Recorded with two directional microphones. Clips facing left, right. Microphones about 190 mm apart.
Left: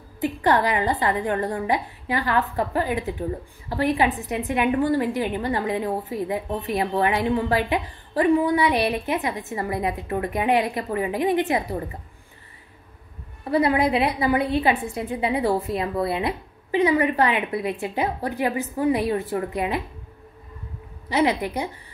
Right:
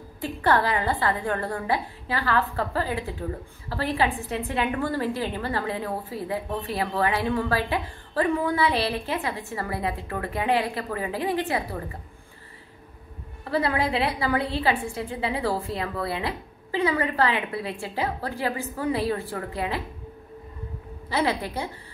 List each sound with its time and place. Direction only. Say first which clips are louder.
0.2 s a woman's voice: left 2 dB; 15° left (ahead or behind)
13.4 s a woman's voice: left 5 dB; 15° left (ahead or behind)
21.1 s a woman's voice: left 4 dB; 15° left (ahead or behind)